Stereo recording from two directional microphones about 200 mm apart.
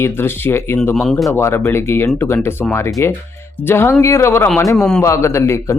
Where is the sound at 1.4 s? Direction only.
10° left (ahead or behind).